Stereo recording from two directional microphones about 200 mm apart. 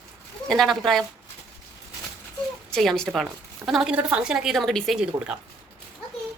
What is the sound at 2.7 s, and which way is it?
A woman's voice, centre (ahead or behind).